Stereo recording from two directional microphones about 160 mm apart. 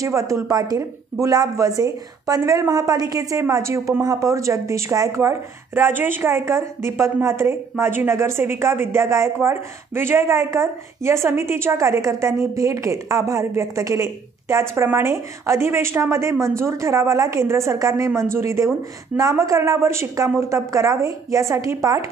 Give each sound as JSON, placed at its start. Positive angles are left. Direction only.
{"t": 0.0, "sound": "a woman's voice", "side_deg": -20}